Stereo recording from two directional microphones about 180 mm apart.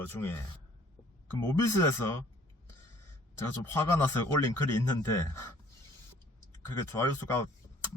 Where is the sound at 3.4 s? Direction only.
15° left (ahead or behind).